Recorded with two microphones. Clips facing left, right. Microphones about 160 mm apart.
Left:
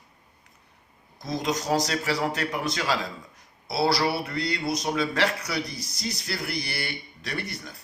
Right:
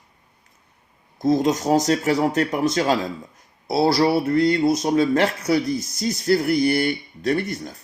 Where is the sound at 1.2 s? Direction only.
50° right (ahead or behind).